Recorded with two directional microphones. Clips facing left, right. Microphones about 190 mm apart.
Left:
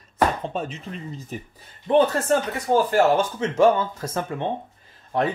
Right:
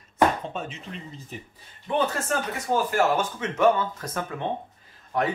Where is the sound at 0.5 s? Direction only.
40° left (ahead or behind).